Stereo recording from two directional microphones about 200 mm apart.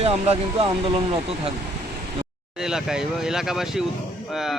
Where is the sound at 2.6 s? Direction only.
5° right (ahead or behind).